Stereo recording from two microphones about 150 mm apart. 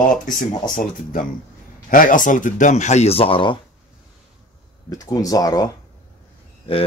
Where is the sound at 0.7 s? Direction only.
65° left (ahead or behind); by 3.6 s 35° left (ahead or behind).